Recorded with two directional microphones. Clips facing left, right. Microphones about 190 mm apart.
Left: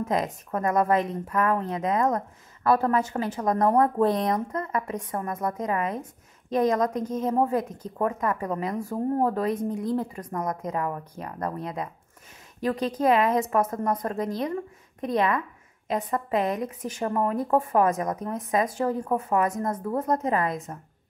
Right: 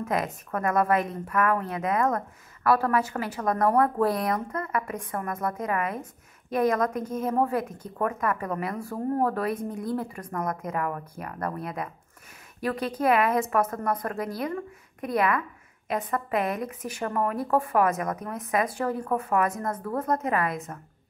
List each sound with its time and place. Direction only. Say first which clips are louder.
0.1 s a woman's voice: even; 20° left (ahead or behind)